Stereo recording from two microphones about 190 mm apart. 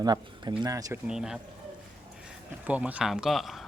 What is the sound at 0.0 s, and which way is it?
Speech, 20° right (ahead or behind).